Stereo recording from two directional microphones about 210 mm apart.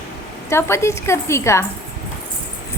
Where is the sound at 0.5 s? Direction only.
10° left (ahead or behind).